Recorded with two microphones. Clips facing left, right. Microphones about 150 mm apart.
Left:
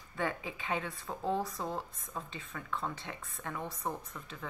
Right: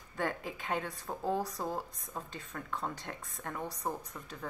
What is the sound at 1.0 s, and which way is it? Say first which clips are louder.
Speech: even; 10° right (ahead or behind).